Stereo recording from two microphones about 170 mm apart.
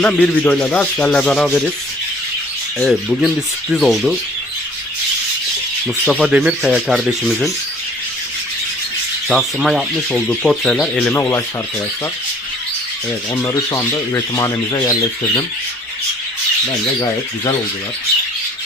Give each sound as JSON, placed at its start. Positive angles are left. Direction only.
{"t": 0.0, "sound": "speech", "side_deg": 10}
{"t": 2.7, "sound": "speech", "side_deg": 0}
{"t": 6.1, "sound": "speech", "side_deg": -5}
{"t": 9.3, "sound": "speech", "side_deg": 0}
{"t": 13.3, "sound": "speech", "side_deg": 20}